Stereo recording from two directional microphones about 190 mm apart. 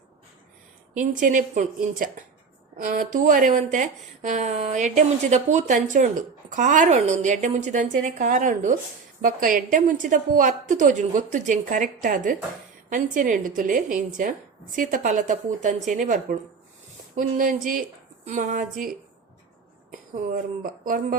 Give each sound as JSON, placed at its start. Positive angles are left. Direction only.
{"t": 0.9, "sound": "a woman's voice", "side_deg": -45}